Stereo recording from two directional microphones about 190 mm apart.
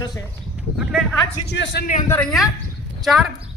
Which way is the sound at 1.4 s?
65° left (ahead or behind).